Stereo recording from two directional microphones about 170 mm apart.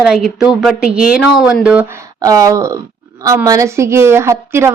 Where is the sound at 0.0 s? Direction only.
5° right (ahead or behind).